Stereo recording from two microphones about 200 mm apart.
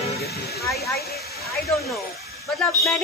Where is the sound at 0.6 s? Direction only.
Centre (ahead or behind).